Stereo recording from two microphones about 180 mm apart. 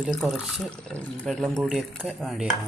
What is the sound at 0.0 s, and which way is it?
Dishes, centre (ahead or behind).